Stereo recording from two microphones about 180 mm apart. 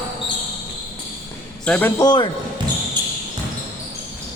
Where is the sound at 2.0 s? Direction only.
25° left (ahead or behind).